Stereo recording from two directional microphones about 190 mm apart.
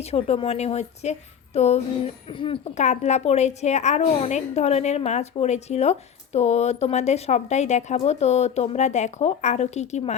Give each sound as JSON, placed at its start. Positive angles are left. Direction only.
{"t": 0.0, "sound": "a woman's voice", "side_deg": 35}